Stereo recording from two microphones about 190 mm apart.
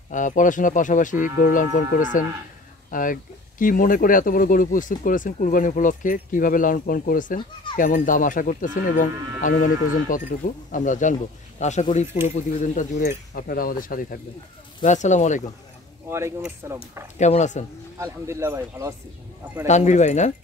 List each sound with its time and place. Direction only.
0.1 s speech: 45° left (ahead or behind)
10.7 s speech: 40° left (ahead or behind)
13.3 s speech: 50° left (ahead or behind)
14.8 s speech: 40° left (ahead or behind)
16.1 s speech: 15° right (ahead or behind)
17.2 s speech: 40° left (ahead or behind)
17.9 s speech: 15° right (ahead or behind)
19.6 s speech: 40° left (ahead or behind)